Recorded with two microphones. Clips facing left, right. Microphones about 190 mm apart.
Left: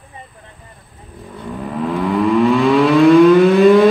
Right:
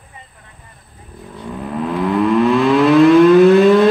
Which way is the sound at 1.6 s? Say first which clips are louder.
Even; centre (ahead or behind).